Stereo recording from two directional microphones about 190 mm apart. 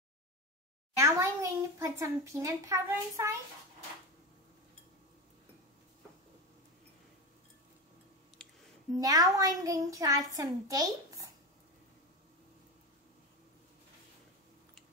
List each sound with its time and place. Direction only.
0.9 s a child's voice: 15° right (ahead or behind)
9.0 s a child's voice: 15° right (ahead or behind)